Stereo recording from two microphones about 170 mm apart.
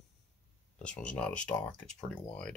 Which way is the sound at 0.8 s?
5° left (ahead or behind).